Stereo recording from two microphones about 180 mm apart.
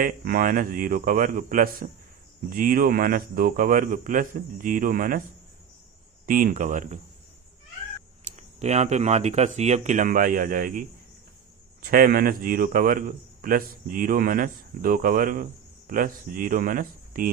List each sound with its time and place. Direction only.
0.0 s a man's voice: 50° right (ahead or behind)
6.2 s a man's voice: 50° right (ahead or behind)
8.2 s a man's voice: 40° right (ahead or behind)